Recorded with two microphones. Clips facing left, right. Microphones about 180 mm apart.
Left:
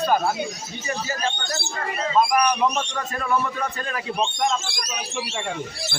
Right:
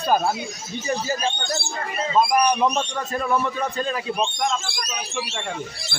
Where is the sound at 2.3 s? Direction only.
30° right (ahead or behind).